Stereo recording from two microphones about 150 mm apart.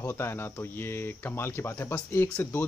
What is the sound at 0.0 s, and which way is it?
Speech, 15° left (ahead or behind).